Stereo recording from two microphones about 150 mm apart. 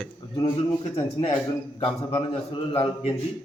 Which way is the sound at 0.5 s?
40° left (ahead or behind).